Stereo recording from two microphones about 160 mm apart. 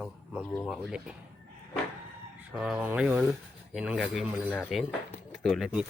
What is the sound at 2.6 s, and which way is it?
Rub, 5° right (ahead or behind).